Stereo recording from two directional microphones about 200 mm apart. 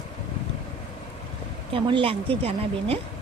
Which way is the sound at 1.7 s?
25° right (ahead or behind).